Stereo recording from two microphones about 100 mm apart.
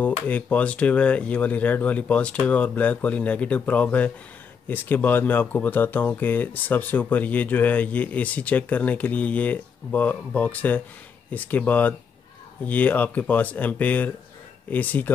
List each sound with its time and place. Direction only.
0.0 s speech: 15° left (ahead or behind)